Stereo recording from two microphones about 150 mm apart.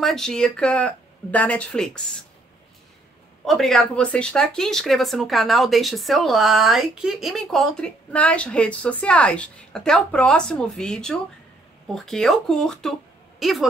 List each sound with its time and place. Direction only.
0.0 s speech: 5° left (ahead or behind)
3.4 s speech: centre (ahead or behind)